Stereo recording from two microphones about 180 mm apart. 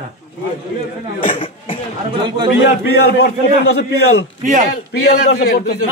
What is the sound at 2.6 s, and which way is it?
A man's voice, 65° left (ahead or behind).